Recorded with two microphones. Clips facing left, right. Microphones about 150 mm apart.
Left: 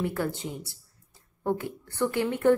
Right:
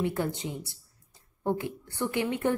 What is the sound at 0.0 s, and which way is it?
A woman's voice, 20° right (ahead or behind).